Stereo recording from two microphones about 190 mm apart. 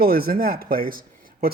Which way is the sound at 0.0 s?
50° right (ahead or behind).